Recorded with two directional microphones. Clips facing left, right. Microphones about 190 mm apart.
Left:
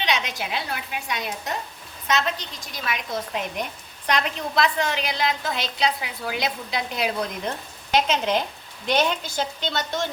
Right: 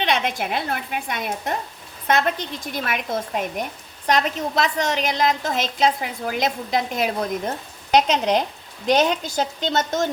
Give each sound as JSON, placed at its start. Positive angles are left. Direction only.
{"t": 0.0, "sound": "a woman's voice", "side_deg": -55}
{"t": 4.0, "sound": "a woman's voice", "side_deg": -40}